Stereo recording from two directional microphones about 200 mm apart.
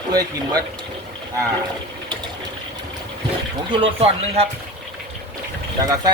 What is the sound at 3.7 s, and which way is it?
Speech, 25° right (ahead or behind).